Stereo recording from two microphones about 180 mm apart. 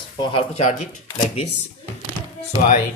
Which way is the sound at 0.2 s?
30° left (ahead or behind).